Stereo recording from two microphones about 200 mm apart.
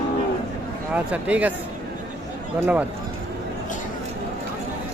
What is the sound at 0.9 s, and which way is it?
Speech, 5° right (ahead or behind).